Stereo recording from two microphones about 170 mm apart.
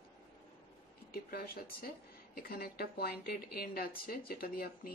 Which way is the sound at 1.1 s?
60° left (ahead or behind).